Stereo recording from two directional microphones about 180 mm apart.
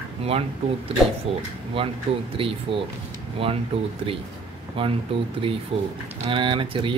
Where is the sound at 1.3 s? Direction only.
30° right (ahead or behind).